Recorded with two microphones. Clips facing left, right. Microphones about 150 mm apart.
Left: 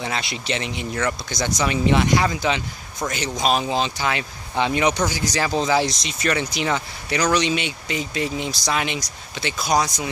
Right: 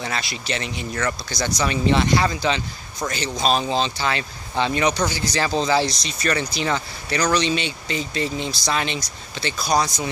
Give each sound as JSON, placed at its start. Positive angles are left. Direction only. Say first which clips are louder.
{"t": 0.0, "sound": "speech", "louder": "left 1 dB", "side_deg": 20}